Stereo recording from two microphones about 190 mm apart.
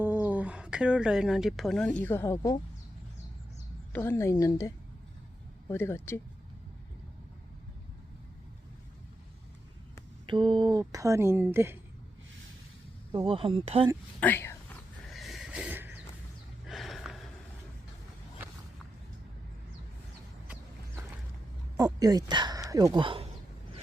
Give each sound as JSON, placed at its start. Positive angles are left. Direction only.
{"t": 0.0, "sound": "speech", "side_deg": -10}
{"t": 3.9, "sound": "a woman's voice", "side_deg": 10}
{"t": 10.2, "sound": "speech", "side_deg": -25}
{"t": 13.1, "sound": "speech", "side_deg": -25}
{"t": 14.2, "sound": "a woman's voice", "side_deg": 10}
{"t": 15.1, "sound": "a sound", "side_deg": 0}
{"t": 21.8, "sound": "speech", "side_deg": -20}